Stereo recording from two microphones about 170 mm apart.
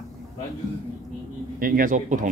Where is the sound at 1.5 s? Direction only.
55° right (ahead or behind).